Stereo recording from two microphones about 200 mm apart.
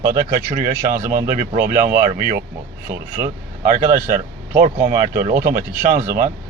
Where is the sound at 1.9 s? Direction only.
45° right (ahead or behind).